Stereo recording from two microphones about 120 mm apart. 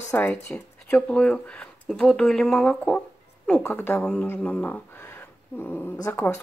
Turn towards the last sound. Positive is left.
turn(degrees=15)  # may be behind; listen again after turning